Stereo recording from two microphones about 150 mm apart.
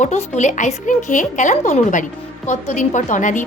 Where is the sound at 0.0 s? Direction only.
50° left (ahead or behind).